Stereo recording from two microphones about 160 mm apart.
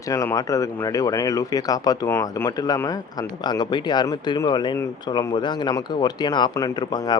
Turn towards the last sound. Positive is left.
turn(degrees=25)  # may be behind; listen again after turning